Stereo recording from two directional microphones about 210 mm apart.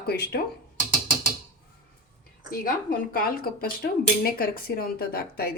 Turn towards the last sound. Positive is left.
turn(degrees=45)  # may be behind; listen again after turning